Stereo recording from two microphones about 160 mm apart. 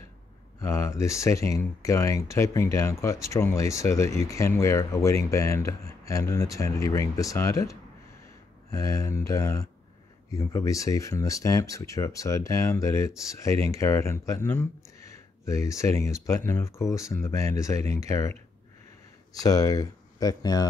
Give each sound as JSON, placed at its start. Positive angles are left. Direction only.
{"t": 0.6, "sound": "speech", "side_deg": 20}
{"t": 8.7, "sound": "speech", "side_deg": 20}
{"t": 19.3, "sound": "speech", "side_deg": 20}